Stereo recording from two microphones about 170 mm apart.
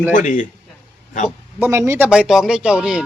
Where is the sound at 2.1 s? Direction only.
5° right (ahead or behind).